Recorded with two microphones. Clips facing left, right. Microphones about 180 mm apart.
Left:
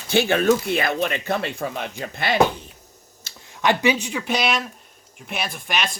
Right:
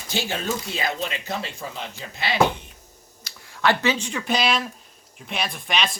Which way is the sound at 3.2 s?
15° left (ahead or behind).